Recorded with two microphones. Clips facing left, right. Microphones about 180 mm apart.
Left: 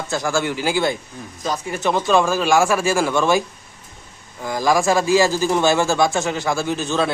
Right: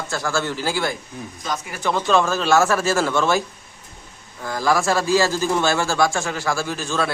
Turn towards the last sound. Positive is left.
turn(degrees=20)  # may be behind; listen again after turning